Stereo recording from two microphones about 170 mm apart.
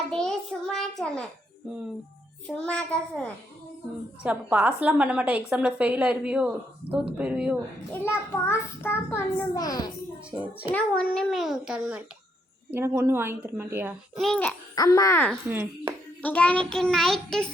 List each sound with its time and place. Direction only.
0.1 s a sound: 5° left (ahead or behind)
2.6 s a child's voice: 5° left (ahead or behind)
4.2 s a woman's voice: 10° right (ahead or behind)
7.9 s a child's voice: 15° left (ahead or behind)
10.7 s a child's voice: 5° left (ahead or behind); by 13.9 s 15° right (ahead or behind)
14.2 s a child's voice: 5° left (ahead or behind)
14.8 s a child's voice: 20° left (ahead or behind)
15.4 s speech: 10° right (ahead or behind)
16.2 s a child's voice: 10° left (ahead or behind)